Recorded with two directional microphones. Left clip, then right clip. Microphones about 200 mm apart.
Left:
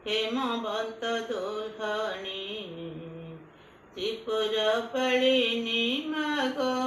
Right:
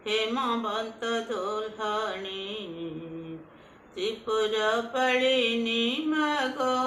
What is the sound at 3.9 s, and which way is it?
Mantra, 25° right (ahead or behind).